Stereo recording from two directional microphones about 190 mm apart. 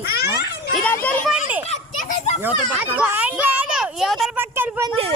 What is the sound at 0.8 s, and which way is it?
Speech, 5° left (ahead or behind).